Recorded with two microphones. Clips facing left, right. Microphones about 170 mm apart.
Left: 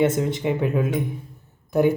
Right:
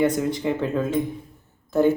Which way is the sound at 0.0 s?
25° left (ahead or behind).